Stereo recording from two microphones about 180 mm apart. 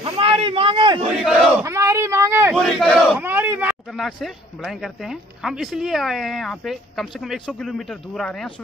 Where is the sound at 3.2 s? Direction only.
10° right (ahead or behind).